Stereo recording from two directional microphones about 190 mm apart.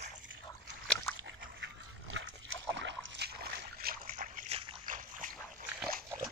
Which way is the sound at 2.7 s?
75° right (ahead or behind).